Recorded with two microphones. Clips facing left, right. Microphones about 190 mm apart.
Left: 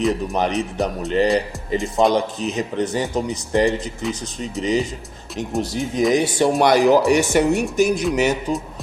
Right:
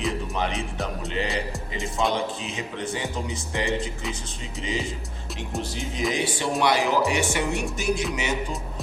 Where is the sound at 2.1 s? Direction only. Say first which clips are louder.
Left 7 dB; 40° left (ahead or behind).